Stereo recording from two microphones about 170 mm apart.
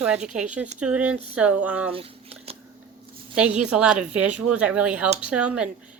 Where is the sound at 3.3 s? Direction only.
5° right (ahead or behind).